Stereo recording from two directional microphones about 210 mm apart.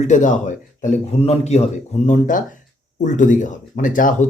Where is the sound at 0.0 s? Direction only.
35° left (ahead or behind).